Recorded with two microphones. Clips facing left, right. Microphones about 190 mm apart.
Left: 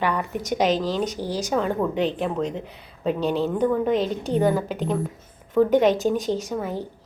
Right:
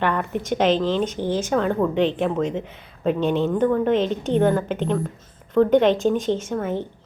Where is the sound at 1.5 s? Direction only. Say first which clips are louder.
Right 1 dB; 5° left (ahead or behind).